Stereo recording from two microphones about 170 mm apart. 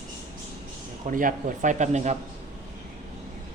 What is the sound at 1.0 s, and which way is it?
Speech, 50° right (ahead or behind).